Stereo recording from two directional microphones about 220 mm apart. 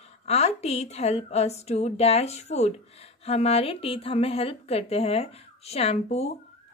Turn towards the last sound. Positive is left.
turn(degrees=30)  # may be behind; listen again after turning